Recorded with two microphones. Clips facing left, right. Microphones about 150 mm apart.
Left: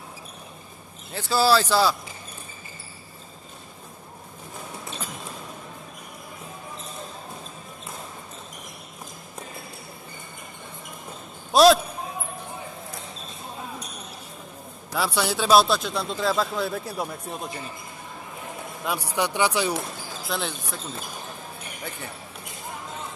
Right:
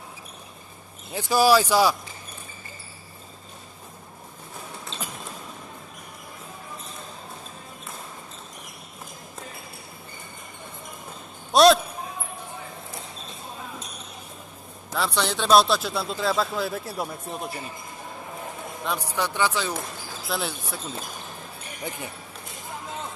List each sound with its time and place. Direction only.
1.1 s speech: 15° right (ahead or behind)
11.5 s basketball bounce: centre (ahead or behind)
14.9 s speech: 5° left (ahead or behind)
18.9 s speech: 10° left (ahead or behind)
20.2 s speech: 5° right (ahead or behind)
21.9 s speech: 15° right (ahead or behind)